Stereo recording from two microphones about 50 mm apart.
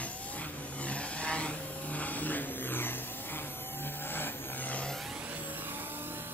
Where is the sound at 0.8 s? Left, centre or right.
Left.